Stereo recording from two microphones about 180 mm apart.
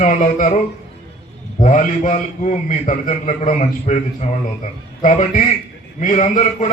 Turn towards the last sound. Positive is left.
turn(degrees=45)  # may be behind; listen again after turning